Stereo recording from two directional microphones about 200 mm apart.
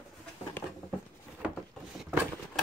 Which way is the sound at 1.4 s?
5° right (ahead or behind).